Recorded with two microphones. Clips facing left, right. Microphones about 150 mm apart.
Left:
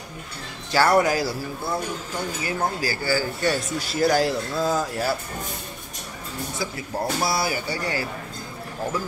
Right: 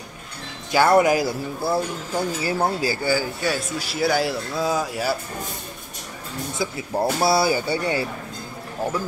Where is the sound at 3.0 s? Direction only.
15° right (ahead or behind).